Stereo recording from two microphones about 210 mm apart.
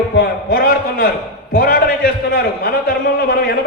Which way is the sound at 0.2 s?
45° left (ahead or behind).